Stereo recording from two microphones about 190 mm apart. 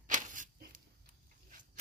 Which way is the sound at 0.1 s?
40° right (ahead or behind).